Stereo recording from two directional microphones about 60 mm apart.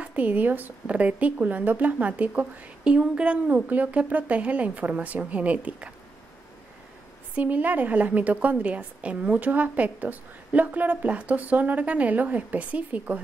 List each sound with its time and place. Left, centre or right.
0.0 s speech: right
7.3 s speech: right